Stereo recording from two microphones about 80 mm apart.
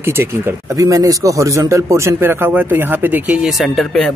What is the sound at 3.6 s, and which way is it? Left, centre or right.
Speech, centre.